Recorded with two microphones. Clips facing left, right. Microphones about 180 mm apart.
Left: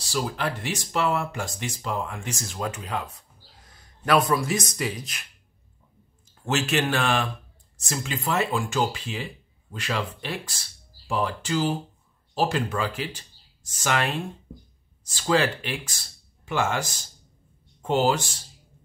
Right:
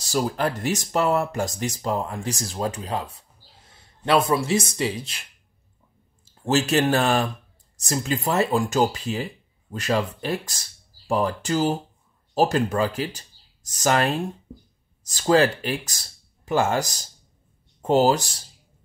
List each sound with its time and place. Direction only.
0.0 s speech: 40° right (ahead or behind)
6.4 s speech: 35° right (ahead or behind)